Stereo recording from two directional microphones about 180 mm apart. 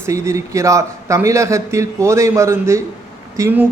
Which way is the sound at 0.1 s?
15° right (ahead or behind).